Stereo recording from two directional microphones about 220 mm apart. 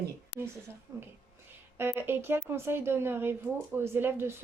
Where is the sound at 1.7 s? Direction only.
10° right (ahead or behind).